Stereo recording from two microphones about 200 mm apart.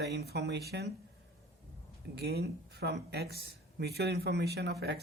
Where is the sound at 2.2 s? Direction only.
55° right (ahead or behind).